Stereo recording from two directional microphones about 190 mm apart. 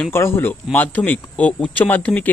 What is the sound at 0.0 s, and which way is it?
Speech, 15° left (ahead or behind).